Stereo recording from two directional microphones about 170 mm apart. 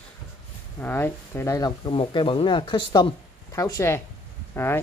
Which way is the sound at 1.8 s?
30° left (ahead or behind).